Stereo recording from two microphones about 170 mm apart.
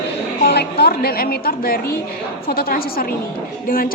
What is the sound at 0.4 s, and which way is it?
A woman's voice, 70° left (ahead or behind).